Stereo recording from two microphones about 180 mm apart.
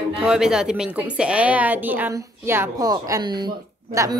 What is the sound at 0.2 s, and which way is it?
A woman's voice, 5° right (ahead or behind).